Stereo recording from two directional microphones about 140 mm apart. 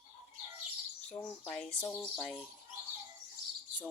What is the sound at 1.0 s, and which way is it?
Livestock, 5° left (ahead or behind).